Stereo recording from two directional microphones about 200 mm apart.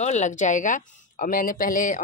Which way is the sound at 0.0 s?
35° left (ahead or behind).